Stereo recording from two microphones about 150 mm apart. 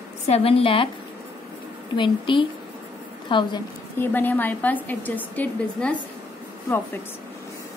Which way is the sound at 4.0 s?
10° left (ahead or behind).